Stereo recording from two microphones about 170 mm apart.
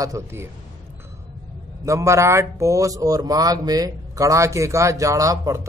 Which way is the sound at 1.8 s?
15° right (ahead or behind).